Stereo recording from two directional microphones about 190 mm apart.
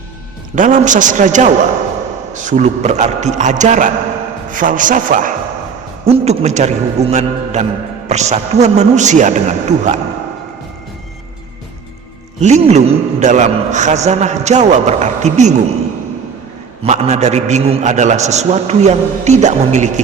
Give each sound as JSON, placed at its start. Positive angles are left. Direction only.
{"t": 0.5, "sound": "a man's voice", "side_deg": -40}
{"t": 12.4, "sound": "a man's voice", "side_deg": -35}
{"t": 16.8, "sound": "a man's voice", "side_deg": -35}